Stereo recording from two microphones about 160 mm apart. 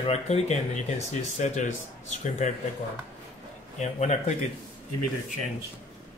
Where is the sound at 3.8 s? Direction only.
45° left (ahead or behind).